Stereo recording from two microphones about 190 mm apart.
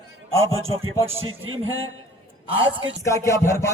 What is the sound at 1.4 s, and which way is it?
Music, 90° right.